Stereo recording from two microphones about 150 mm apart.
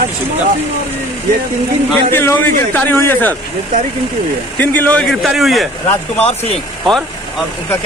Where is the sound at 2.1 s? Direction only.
15° left (ahead or behind).